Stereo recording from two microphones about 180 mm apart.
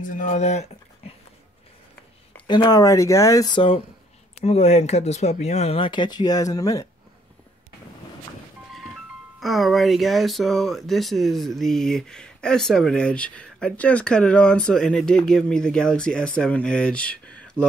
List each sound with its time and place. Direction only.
0.0 s speech: 45° left (ahead or behind)
2.4 s speech: 25° left (ahead or behind)
8.7 s speech: centre (ahead or behind)